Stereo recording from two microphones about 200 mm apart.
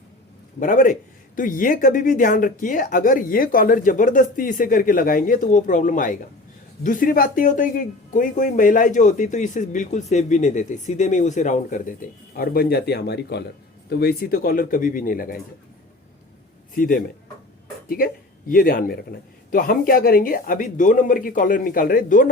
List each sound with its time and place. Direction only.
0.6 s speech: 40° left (ahead or behind)
16.7 s speech: 45° left (ahead or behind)